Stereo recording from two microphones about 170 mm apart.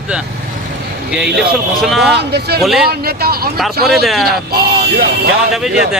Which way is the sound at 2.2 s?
75° right (ahead or behind).